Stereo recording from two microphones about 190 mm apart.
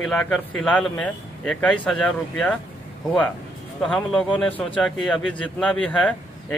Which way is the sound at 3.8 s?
Centre (ahead or behind).